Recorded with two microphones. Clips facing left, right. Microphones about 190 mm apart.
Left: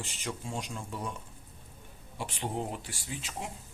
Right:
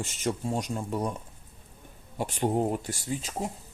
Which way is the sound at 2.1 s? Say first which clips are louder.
Right 8 dB; 45° right (ahead or behind).